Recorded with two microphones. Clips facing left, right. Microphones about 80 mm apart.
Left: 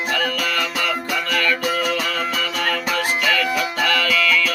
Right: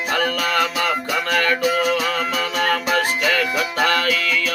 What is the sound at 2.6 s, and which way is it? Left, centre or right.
Music, right.